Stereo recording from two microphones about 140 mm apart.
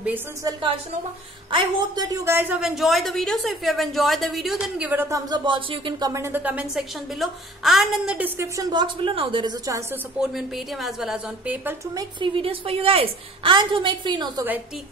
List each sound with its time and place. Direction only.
1.5 s a woman's voice: 35° right (ahead or behind); by 5.2 s 15° right (ahead or behind)
5.3 s speech: 35° right (ahead or behind); by 6.6 s 15° right (ahead or behind)
6.7 s a woman's voice: centre (ahead or behind)
8.4 s a woman's voice: 25° right (ahead or behind)
10.3 s a woman's voice: centre (ahead or behind)
11.6 s speech: 25° right (ahead or behind)
12.4 s a woman's voice: 40° right (ahead or behind)